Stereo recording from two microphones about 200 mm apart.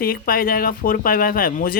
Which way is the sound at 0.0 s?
45° left (ahead or behind).